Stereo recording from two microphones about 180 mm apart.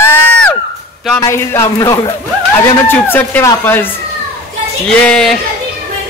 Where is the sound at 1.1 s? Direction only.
15° left (ahead or behind).